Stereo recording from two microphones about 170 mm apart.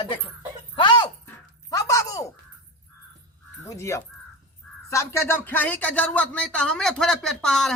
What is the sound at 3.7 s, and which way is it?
Speech, 15° left (ahead or behind).